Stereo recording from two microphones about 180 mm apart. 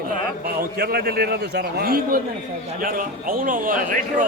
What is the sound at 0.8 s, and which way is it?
A man's voice, 55° right (ahead or behind).